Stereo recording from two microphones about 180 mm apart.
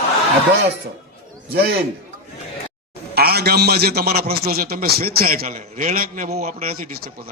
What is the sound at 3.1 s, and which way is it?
A man's voice, 60° right (ahead or behind).